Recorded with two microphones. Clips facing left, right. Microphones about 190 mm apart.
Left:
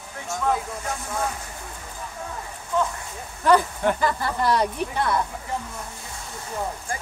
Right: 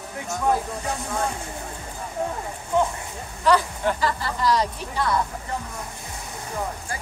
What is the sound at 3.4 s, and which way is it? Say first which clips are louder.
Speech: left 2 dB; 50° left (ahead or behind).